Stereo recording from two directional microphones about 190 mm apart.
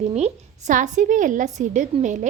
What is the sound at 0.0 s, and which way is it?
A woman's voice, 35° right (ahead or behind).